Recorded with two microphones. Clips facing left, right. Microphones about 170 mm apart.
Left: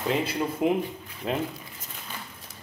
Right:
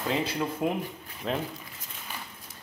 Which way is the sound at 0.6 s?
15° left (ahead or behind).